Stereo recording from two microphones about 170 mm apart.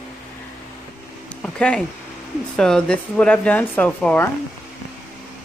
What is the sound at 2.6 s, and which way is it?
Speech, 5° left (ahead or behind).